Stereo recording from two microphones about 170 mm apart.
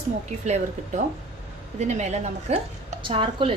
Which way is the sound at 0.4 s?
40° right (ahead or behind).